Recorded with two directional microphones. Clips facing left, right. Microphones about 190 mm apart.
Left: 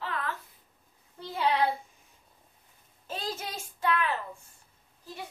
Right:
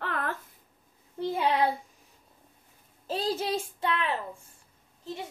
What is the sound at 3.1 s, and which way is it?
Child singing, 35° right (ahead or behind).